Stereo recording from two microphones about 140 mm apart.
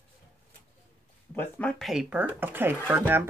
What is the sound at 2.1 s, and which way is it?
Speech, 15° right (ahead or behind).